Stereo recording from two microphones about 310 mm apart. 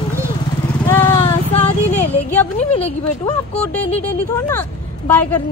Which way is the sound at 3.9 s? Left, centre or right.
Centre.